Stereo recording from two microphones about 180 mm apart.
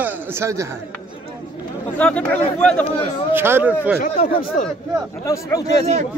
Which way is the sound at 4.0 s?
55° left (ahead or behind).